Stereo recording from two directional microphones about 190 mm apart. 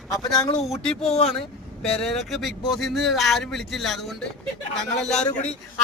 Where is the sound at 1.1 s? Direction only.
30° left (ahead or behind).